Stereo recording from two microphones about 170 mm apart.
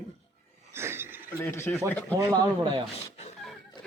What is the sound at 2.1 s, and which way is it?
Speech, 20° right (ahead or behind).